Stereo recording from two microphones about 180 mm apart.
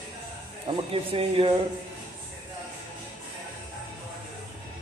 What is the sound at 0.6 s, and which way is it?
Speech, 30° right (ahead or behind).